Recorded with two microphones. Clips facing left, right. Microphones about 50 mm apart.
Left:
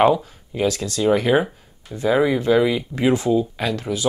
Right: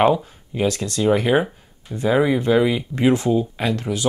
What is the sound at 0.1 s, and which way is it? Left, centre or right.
Speech, right.